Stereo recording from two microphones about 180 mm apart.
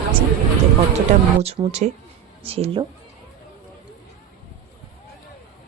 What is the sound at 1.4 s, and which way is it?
Speech, 30° right (ahead or behind).